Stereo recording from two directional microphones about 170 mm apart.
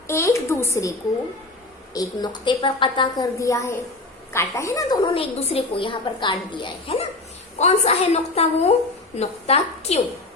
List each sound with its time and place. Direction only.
0.1 s a woman's voice: 15° left (ahead or behind)
5.1 s a woman's voice: 35° left (ahead or behind)